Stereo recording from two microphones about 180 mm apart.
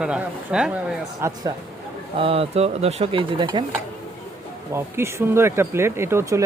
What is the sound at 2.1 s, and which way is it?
Speech, 30° right (ahead or behind).